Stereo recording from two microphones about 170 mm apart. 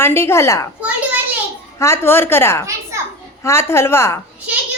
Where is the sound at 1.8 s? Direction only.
15° left (ahead or behind).